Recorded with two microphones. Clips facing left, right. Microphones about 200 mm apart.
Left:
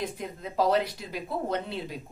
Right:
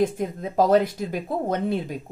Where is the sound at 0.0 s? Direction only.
45° right (ahead or behind).